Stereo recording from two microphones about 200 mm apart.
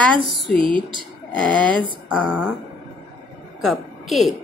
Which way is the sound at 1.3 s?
5° left (ahead or behind).